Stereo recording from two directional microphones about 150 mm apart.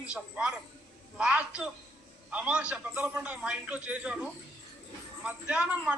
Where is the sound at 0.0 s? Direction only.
5° right (ahead or behind).